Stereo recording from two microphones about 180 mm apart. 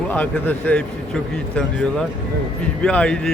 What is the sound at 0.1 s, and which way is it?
Speech, 10° left (ahead or behind).